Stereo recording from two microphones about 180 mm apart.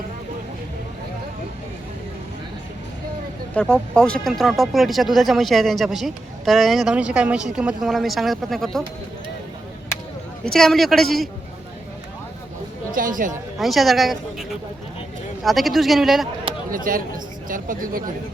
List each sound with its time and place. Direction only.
3.5 s speech: 5° left (ahead or behind)
10.4 s speech: 5° left (ahead or behind)
12.9 s speech: 50° right (ahead or behind)
13.6 s speech: centre (ahead or behind)
15.4 s speech: centre (ahead or behind)
16.7 s speech: 50° right (ahead or behind)